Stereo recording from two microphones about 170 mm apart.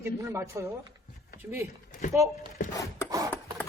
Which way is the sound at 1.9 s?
50° left (ahead or behind).